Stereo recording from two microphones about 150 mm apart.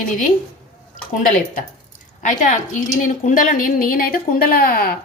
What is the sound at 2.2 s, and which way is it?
A woman's voice, 60° left (ahead or behind).